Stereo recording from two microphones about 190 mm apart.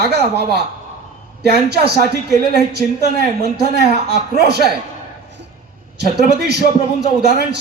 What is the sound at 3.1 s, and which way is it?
Speech, 55° right (ahead or behind).